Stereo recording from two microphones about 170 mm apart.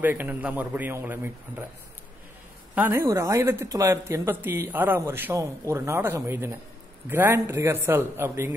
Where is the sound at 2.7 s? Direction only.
15° right (ahead or behind).